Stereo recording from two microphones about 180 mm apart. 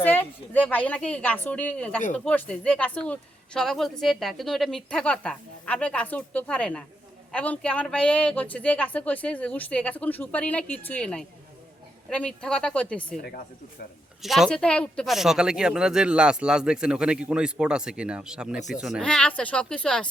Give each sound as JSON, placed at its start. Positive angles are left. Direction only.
{"t": 0.0, "sound": "speech", "side_deg": 10}
{"t": 13.2, "sound": "speech", "side_deg": 55}
{"t": 14.2, "sound": "speech", "side_deg": 0}